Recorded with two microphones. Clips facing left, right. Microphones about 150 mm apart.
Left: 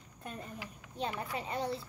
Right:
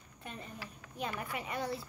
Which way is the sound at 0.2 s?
40° left (ahead or behind).